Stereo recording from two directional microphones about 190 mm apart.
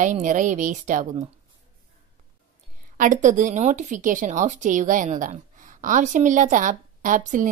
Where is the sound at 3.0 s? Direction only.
45° right (ahead or behind).